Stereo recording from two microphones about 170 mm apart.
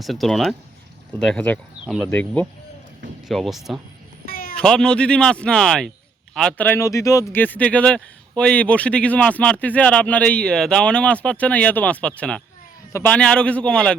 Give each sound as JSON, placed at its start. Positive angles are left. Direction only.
{"t": 0.0, "sound": "speech", "side_deg": 0}
{"t": 4.3, "sound": "a sound", "side_deg": 60}
{"t": 4.5, "sound": "speech", "side_deg": 5}